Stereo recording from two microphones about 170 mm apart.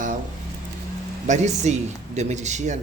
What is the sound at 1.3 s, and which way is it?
Speech, 45° right (ahead or behind).